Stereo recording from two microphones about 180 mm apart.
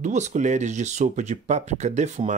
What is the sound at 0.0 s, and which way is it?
Speech, 40° right (ahead or behind).